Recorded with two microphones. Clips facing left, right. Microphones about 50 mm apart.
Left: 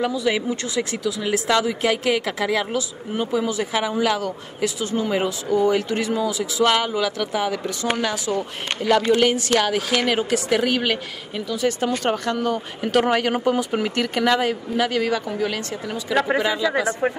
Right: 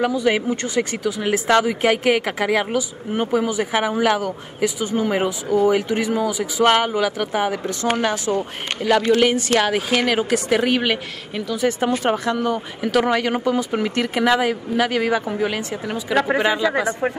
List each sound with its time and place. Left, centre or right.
0.0 s speech: right
2.3 s speech: right
4.2 s speech: centre
6.3 s speech: right
9.2 s speech: centre
9.6 s speech: centre
10.0 s speech: centre
13.7 s speech: centre; by 16.8 s right
17.0 s speech: centre